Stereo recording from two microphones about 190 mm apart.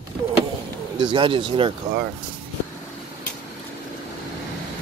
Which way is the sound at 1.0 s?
25° right (ahead or behind).